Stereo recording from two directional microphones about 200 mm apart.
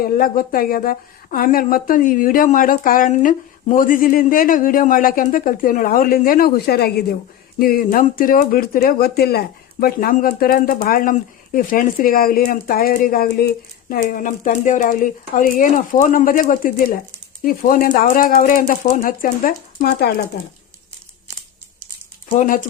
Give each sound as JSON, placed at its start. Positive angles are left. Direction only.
{"t": 0.0, "sound": "speech", "side_deg": 45}
{"t": 22.3, "sound": "speech", "side_deg": 40}